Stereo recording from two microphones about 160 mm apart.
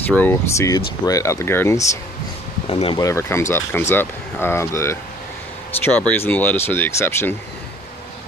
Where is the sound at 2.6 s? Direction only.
35° left (ahead or behind).